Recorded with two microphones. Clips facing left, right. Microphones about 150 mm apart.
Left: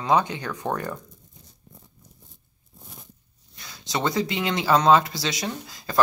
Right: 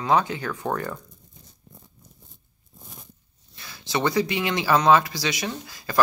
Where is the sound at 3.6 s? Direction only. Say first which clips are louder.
Right 2 dB; 20° left (ahead or behind).